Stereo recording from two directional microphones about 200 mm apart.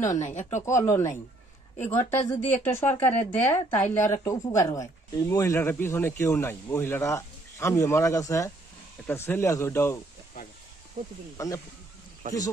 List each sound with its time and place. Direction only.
0.2 s speech: 35° left (ahead or behind)
0.7 s speech: 15° left (ahead or behind)
11.3 s speech: 15° left (ahead or behind)
12.2 s speech: 40° right (ahead or behind)